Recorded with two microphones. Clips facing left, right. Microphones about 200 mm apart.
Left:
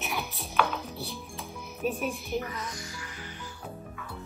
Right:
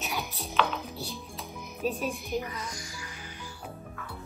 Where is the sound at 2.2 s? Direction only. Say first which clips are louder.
Even; 15° right (ahead or behind).